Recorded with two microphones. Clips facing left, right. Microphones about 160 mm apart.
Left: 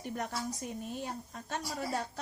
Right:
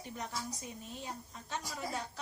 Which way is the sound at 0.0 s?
55° left (ahead or behind).